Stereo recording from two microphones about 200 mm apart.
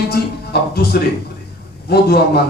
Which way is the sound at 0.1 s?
50° left (ahead or behind).